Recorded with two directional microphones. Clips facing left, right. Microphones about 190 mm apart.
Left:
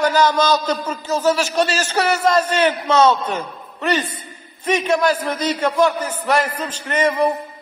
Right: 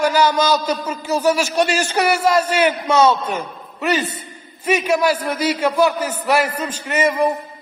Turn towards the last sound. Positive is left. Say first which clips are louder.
# even
turn(degrees=-10)  # may be behind; listen again after turning